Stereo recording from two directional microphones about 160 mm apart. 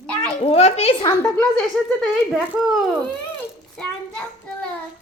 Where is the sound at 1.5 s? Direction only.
Centre (ahead or behind).